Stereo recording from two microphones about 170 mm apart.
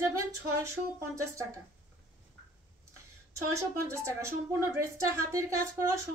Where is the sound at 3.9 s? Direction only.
15° right (ahead or behind).